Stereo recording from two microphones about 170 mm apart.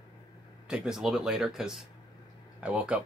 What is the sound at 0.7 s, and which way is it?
Speech, 5° right (ahead or behind).